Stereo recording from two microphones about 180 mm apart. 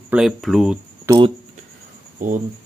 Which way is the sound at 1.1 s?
15° right (ahead or behind).